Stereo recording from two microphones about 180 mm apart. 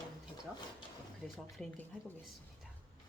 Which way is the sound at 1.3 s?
Centre (ahead or behind).